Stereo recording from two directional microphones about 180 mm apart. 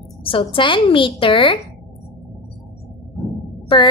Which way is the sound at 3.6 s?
25° left (ahead or behind).